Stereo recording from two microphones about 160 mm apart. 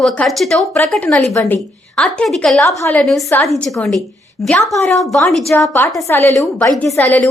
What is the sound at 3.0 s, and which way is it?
A woman's voice, centre (ahead or behind).